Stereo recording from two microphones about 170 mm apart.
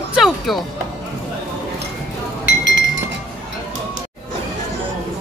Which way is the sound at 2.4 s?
90° right.